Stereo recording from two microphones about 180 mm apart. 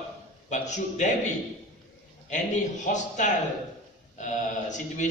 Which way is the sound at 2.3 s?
45° left (ahead or behind).